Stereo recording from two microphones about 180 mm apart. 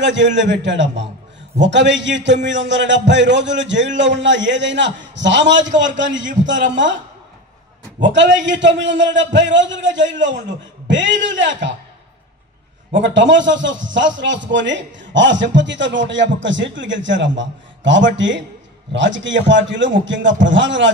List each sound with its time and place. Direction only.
0.0 s a man's voice: 85° right
8.0 s a man's voice: 85° right
12.9 s a man's voice: 90° right